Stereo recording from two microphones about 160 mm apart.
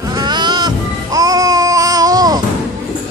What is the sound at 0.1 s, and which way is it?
Music, 25° right (ahead or behind).